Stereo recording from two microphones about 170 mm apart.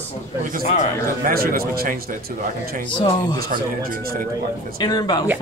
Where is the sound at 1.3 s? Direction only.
60° right (ahead or behind).